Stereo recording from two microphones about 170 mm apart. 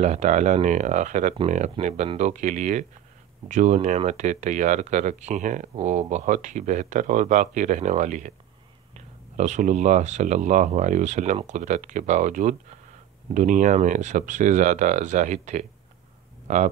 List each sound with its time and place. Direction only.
0.0 s speech: 45° right (ahead or behind)